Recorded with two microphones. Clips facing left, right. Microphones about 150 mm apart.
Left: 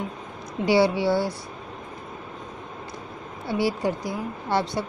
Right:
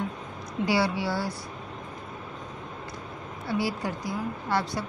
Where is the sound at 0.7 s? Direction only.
25° left (ahead or behind).